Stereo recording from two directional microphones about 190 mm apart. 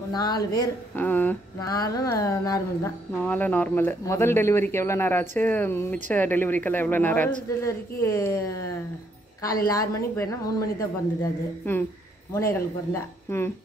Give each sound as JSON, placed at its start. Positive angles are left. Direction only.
{"t": 0.1, "sound": "a woman's voice", "side_deg": 20}